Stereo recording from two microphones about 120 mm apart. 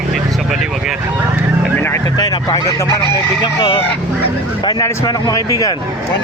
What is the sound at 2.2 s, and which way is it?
Speech, 30° left (ahead or behind).